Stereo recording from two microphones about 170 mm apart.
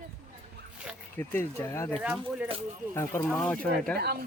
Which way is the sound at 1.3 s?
15° left (ahead or behind).